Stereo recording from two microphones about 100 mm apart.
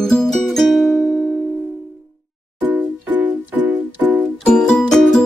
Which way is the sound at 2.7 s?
20° right (ahead or behind).